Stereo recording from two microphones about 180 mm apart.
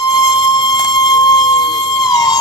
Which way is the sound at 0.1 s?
25° left (ahead or behind).